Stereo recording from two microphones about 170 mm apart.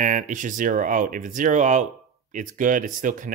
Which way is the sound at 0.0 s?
50° right (ahead or behind).